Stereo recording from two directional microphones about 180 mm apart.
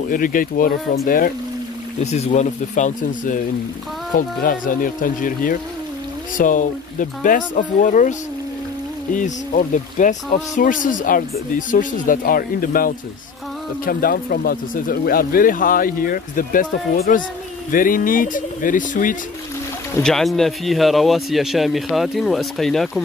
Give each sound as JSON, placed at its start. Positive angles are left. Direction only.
{"t": 0.1, "sound": "speech", "side_deg": 50}
{"t": 2.0, "sound": "speech", "side_deg": 40}
{"t": 4.4, "sound": "speech", "side_deg": 50}
{"t": 20.0, "sound": "speech", "side_deg": 0}